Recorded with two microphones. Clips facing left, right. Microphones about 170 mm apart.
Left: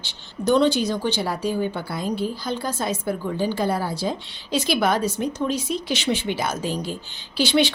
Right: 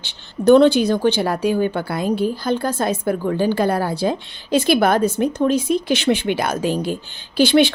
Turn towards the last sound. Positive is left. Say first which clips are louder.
# right 6 dB
turn(degrees=-55)  # may be behind; listen again after turning